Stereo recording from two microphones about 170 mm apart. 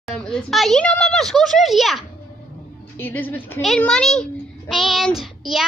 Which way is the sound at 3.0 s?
10° left (ahead or behind).